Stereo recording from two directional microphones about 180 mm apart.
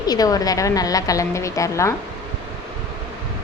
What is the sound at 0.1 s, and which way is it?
A woman's voice, 20° left (ahead or behind).